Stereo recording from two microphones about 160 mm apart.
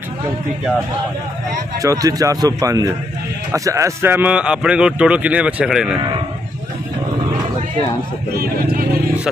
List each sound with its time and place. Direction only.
1.8 s a man's voice: 20° right (ahead or behind); by 5.9 s 5° right (ahead or behind)